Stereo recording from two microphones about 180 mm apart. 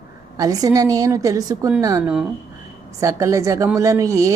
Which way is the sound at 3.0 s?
15° right (ahead or behind).